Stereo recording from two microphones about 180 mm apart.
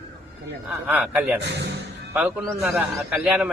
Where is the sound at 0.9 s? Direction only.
10° right (ahead or behind).